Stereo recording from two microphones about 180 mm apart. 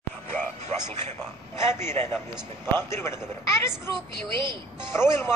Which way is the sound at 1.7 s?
15° left (ahead or behind).